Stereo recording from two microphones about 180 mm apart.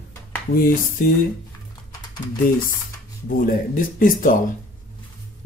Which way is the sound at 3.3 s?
50° left (ahead or behind).